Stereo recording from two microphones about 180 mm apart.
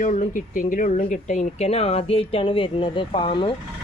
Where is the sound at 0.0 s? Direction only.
45° left (ahead or behind).